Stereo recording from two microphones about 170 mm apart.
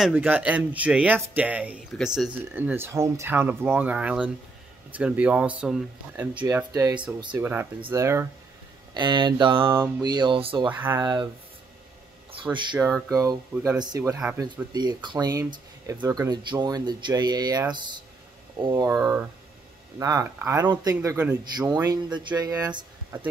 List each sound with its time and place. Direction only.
0.0 s speech: 10° right (ahead or behind)
6.7 s speech: 20° right (ahead or behind)
7.9 s speech: 15° right (ahead or behind)
8.9 s speech: 25° right (ahead or behind)
10.7 s speech: 15° right (ahead or behind)
12.8 s speech: 10° right (ahead or behind)
13.1 s speech: 20° right (ahead or behind)
18.9 s speech: 15° right (ahead or behind)